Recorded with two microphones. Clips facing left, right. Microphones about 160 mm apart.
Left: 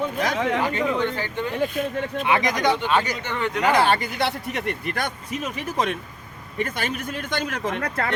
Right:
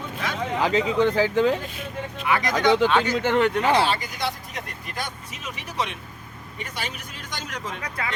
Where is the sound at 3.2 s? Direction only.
80° right.